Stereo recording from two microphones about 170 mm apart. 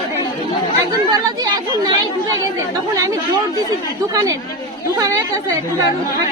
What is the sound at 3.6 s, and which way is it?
Speech, 20° right (ahead or behind).